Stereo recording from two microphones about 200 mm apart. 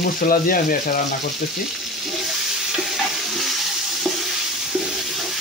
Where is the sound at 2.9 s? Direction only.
Centre (ahead or behind).